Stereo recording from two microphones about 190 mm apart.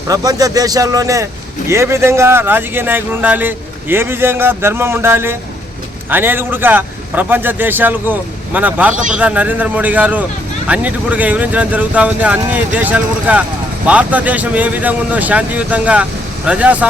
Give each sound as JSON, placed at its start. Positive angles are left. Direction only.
{"t": 0.1, "sound": "a man's voice", "side_deg": -20}